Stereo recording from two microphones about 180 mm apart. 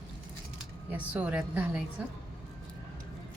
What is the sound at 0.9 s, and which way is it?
Speech, 10° right (ahead or behind).